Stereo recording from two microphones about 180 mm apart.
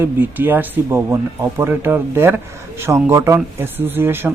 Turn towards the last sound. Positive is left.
turn(degrees=-10)  # may be behind; listen again after turning